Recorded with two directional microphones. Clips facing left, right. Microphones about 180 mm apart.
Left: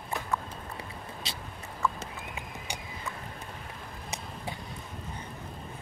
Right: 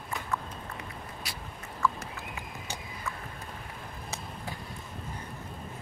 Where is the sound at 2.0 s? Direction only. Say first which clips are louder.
Even; 20° left (ahead or behind).